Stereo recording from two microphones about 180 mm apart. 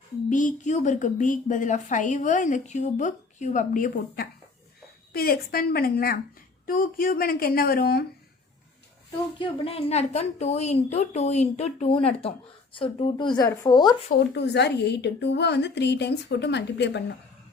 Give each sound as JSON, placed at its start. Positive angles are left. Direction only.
{"t": 0.3, "sound": "a woman's voice", "side_deg": 45}
{"t": 9.4, "sound": "a woman's voice", "side_deg": 35}
{"t": 14.1, "sound": "a woman's voice", "side_deg": 70}